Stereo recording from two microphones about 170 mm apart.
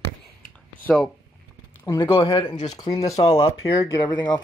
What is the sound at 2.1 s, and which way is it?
Speech, 30° left (ahead or behind).